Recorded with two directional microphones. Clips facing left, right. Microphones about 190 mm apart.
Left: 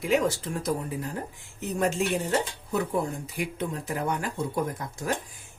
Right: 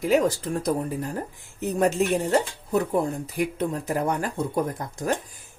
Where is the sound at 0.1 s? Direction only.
40° right (ahead or behind).